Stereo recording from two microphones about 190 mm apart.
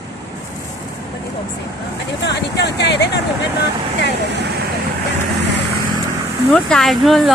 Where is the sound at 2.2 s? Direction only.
65° left (ahead or behind).